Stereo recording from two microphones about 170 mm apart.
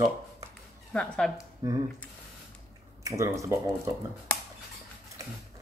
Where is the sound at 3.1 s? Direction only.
20° right (ahead or behind).